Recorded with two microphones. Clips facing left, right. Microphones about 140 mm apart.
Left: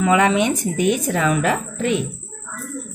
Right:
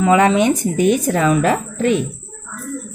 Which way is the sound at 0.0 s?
35° right (ahead or behind).